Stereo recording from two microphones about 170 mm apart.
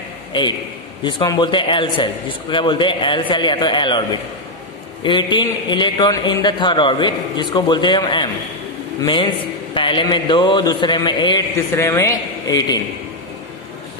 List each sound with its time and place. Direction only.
0.3 s a man's voice: 30° left (ahead or behind)